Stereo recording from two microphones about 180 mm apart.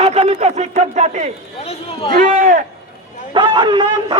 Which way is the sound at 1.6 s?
35° left (ahead or behind).